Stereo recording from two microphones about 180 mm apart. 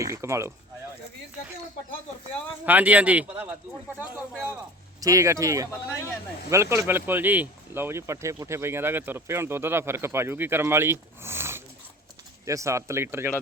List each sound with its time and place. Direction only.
0.0 s speech: 15° right (ahead or behind)
2.6 s speech: 10° right (ahead or behind)
4.9 s speech: 20° right (ahead or behind)